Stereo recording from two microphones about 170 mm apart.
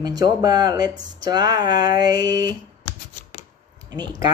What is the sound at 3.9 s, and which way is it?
Speech, 25° right (ahead or behind).